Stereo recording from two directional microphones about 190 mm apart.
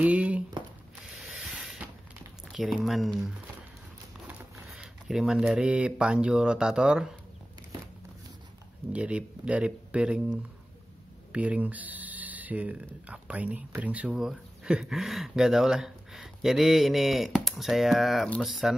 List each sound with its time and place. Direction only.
0.0 s a sound: 5° right (ahead or behind)
2.4 s speech: centre (ahead or behind)
8.9 s speech: 5° right (ahead or behind)
11.3 s speech: 5° right (ahead or behind)